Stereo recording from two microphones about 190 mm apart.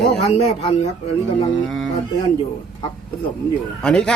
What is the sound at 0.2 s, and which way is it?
Speech, 35° left (ahead or behind).